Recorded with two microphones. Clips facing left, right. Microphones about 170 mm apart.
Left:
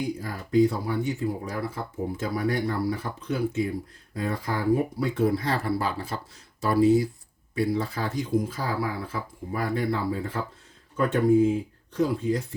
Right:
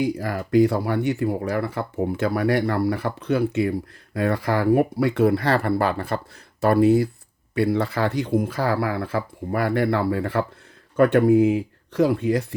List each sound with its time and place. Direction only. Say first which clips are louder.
0.0 s speech: right 7 dB; 75° right (ahead or behind)